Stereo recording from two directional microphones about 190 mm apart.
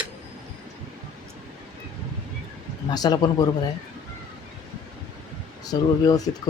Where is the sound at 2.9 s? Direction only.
20° left (ahead or behind).